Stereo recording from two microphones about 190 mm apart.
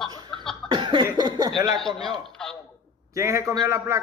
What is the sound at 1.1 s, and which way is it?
Speech, 20° right (ahead or behind).